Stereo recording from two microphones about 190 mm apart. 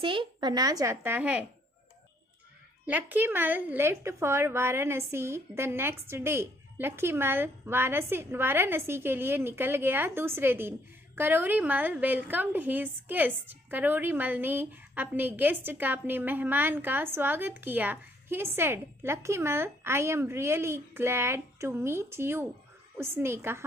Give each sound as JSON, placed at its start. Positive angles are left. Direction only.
{"t": 0.0, "sound": "speech", "side_deg": -25}
{"t": 2.8, "sound": "a woman's voice", "side_deg": -10}